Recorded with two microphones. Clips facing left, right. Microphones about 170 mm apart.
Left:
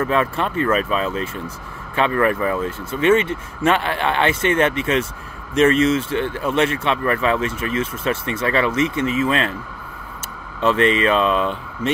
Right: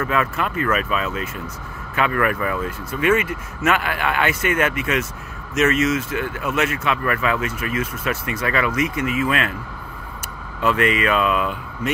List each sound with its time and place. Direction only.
0.0 s speech: 30° left (ahead or behind)
10.6 s speech: 30° left (ahead or behind)